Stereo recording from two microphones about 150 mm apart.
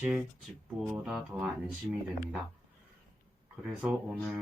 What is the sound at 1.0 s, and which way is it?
Speech, 5° right (ahead or behind).